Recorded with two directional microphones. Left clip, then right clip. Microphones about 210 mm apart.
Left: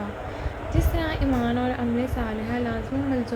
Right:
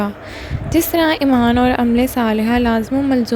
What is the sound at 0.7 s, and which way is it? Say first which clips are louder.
A woman's voice: right 14 dB; 50° right (ahead or behind).